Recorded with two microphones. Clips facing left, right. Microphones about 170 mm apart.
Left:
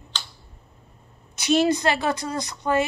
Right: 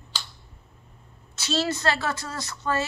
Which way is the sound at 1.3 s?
15° left (ahead or behind).